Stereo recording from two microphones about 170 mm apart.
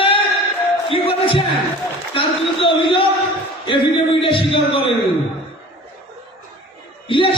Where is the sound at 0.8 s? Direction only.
30° left (ahead or behind).